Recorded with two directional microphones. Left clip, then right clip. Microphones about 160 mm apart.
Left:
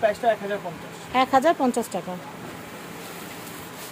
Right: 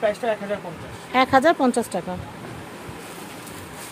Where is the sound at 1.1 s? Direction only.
25° right (ahead or behind).